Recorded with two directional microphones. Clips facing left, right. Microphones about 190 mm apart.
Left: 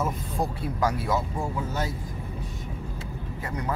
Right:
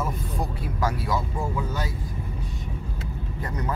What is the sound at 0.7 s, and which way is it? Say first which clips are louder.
Speech: left 1 dB; 20° left (ahead or behind).